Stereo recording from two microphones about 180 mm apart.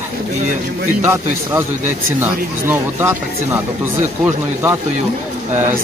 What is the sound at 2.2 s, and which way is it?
Speech, 10° right (ahead or behind).